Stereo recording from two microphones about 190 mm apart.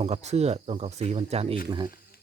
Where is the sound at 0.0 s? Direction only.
35° right (ahead or behind).